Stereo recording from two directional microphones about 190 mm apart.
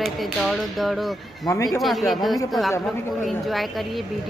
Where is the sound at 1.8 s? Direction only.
Centre (ahead or behind).